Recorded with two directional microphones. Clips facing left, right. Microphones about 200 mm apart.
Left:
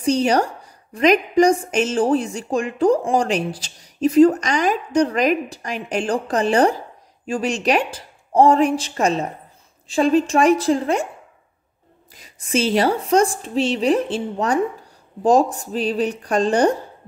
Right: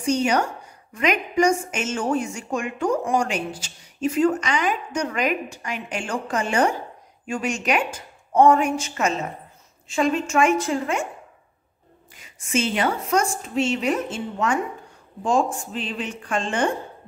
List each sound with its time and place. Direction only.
0.0 s a woman's voice: 35° left (ahead or behind)
12.1 s a woman's voice: 35° left (ahead or behind)